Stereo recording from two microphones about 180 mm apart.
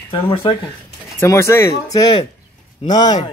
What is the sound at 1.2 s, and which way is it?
Speech, 15° left (ahead or behind).